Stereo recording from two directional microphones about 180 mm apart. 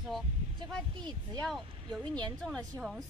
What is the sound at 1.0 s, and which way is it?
Speech, 25° right (ahead or behind).